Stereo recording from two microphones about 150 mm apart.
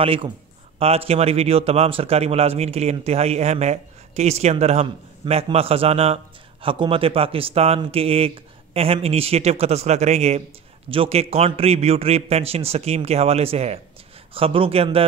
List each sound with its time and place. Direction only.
0.0 s a man's voice: 35° right (ahead or behind)